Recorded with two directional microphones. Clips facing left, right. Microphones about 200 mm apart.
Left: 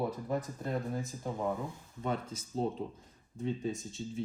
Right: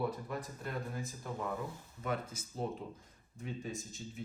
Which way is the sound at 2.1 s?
30° left (ahead or behind).